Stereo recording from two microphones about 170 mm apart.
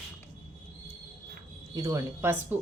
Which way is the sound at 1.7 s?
20° right (ahead or behind).